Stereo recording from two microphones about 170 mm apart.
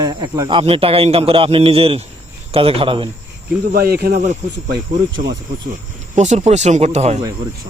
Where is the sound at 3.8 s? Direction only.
65° right (ahead or behind).